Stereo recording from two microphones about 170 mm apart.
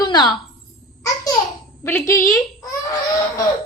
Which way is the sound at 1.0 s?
20° left (ahead or behind).